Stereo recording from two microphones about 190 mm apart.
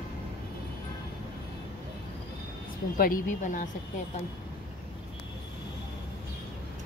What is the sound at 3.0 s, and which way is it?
Speech, 45° left (ahead or behind).